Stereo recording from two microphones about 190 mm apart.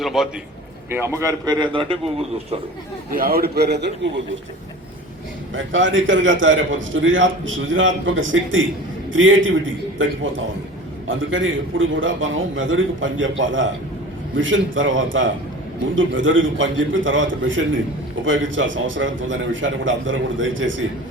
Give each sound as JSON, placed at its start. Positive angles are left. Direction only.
{"t": 0.0, "sound": "a man's voice", "side_deg": 0}
{"t": 0.9, "sound": "a man's voice", "side_deg": -15}
{"t": 3.1, "sound": "a man's voice", "side_deg": -50}
{"t": 5.5, "sound": "a man's voice", "side_deg": -90}